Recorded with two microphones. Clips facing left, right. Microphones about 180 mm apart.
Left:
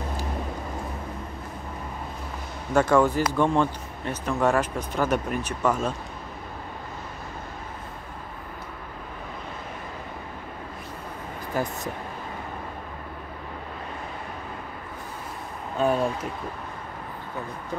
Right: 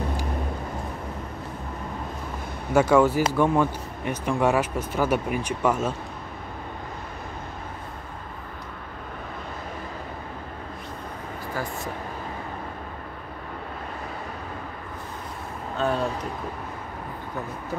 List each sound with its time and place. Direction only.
2.7 s speech: 10° right (ahead or behind)
11.5 s speech: 20° left (ahead or behind)
15.8 s speech: 10° left (ahead or behind)